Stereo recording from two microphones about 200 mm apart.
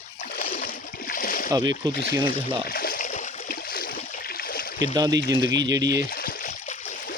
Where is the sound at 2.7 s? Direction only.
45° left (ahead or behind).